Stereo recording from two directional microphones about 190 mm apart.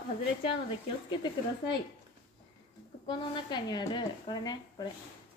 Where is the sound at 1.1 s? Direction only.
25° left (ahead or behind).